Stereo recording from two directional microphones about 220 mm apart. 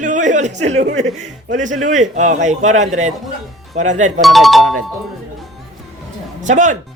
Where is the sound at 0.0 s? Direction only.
35° right (ahead or behind).